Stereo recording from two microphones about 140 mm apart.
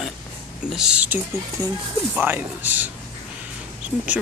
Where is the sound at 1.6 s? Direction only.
25° right (ahead or behind).